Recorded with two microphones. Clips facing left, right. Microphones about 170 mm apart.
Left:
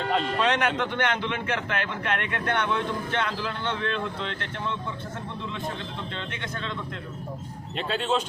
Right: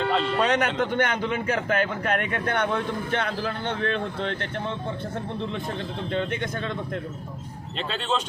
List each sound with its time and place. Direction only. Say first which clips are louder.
0.0 s music: right 2 dB; 45° left (ahead or behind)
0.3 s speech: right 2 dB; 45° right (ahead or behind)
6.1 s speech: right 8 dB; 45° right (ahead or behind)